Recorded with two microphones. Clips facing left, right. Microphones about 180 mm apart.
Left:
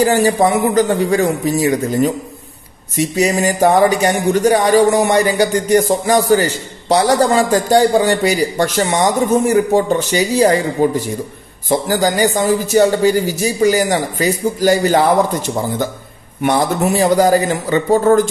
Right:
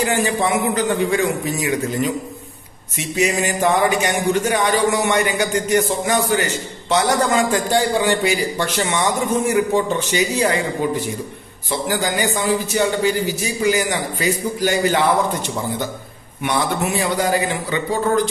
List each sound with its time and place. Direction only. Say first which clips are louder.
0.0 s speech: left 7 dB; 40° left (ahead or behind)
16.5 s speech: left 4 dB; 40° left (ahead or behind)